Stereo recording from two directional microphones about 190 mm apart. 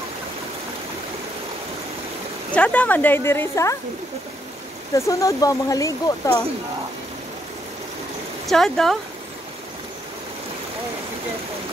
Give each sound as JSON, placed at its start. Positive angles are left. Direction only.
{"t": 2.5, "sound": "speech", "side_deg": 5}
{"t": 4.9, "sound": "speech", "side_deg": 15}
{"t": 8.5, "sound": "speech", "side_deg": 0}